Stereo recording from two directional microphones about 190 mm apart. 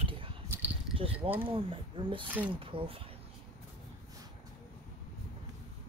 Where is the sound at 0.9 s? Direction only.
30° right (ahead or behind).